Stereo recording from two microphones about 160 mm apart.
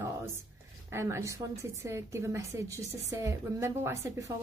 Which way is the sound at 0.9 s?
15° right (ahead or behind).